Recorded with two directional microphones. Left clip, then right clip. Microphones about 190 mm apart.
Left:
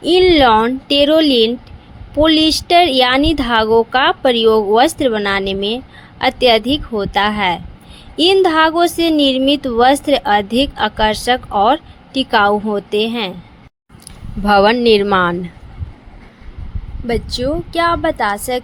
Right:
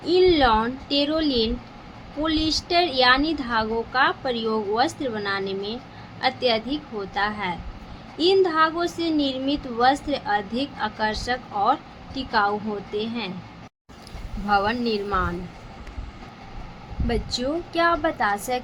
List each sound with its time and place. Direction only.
0.0 s a woman's voice: 45° left (ahead or behind)
14.4 s a woman's voice: 45° left (ahead or behind)
17.1 s a woman's voice: 30° left (ahead or behind)